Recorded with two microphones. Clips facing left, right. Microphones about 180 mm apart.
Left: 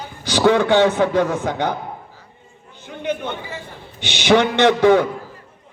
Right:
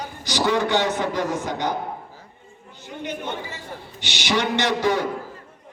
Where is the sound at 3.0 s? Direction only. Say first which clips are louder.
Left 5 dB; 60° left (ahead or behind).